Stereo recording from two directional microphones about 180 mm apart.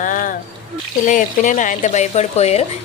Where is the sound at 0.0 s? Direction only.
45° left (ahead or behind).